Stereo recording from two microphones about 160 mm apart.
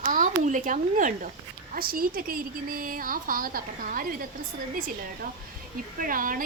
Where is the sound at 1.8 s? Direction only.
65° right (ahead or behind).